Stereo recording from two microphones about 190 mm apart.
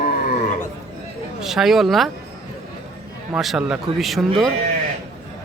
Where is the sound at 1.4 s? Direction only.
Centre (ahead or behind).